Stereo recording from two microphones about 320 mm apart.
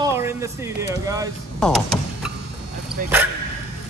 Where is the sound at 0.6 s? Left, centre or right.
Centre.